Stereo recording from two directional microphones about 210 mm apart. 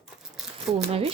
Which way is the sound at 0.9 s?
25° right (ahead or behind).